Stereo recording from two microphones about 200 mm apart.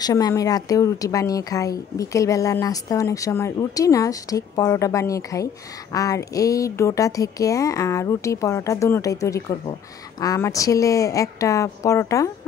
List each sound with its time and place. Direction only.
0.0 s speech: 15° left (ahead or behind)